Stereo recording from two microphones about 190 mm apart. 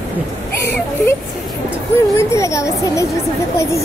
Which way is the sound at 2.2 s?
15° left (ahead or behind).